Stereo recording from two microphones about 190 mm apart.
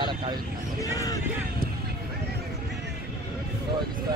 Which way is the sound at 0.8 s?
20° left (ahead or behind).